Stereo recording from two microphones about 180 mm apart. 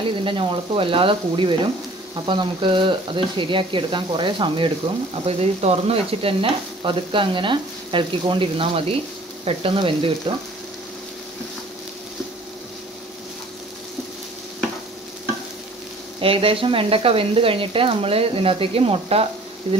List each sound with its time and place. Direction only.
0.2 s stir: 30° right (ahead or behind)
9.4 s speech: 30° right (ahead or behind)
16.2 s speech: 30° right (ahead or behind)